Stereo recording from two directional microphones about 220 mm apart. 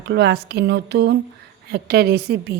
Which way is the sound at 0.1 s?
50° right (ahead or behind).